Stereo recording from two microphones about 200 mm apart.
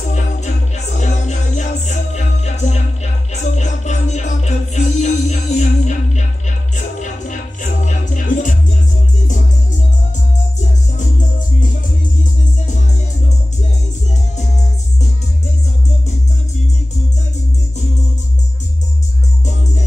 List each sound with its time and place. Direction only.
0.1 s music: 35° left (ahead or behind)